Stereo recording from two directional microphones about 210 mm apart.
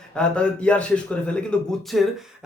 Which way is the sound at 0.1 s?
5° left (ahead or behind).